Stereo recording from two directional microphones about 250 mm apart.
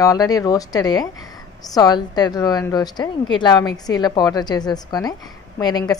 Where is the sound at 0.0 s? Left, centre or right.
Centre.